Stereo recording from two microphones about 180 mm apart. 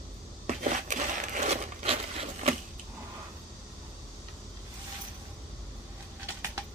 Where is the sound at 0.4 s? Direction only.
45° right (ahead or behind).